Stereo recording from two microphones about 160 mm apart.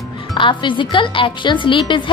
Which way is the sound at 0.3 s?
30° left (ahead or behind).